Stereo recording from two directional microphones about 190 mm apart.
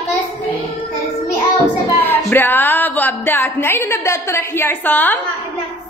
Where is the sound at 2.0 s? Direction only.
10° left (ahead or behind).